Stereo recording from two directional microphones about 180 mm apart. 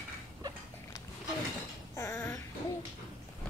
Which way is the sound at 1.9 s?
15° left (ahead or behind).